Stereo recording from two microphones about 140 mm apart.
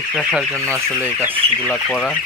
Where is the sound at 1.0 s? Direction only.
15° right (ahead or behind).